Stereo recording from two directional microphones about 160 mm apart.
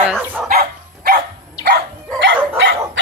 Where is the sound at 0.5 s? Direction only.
65° right (ahead or behind).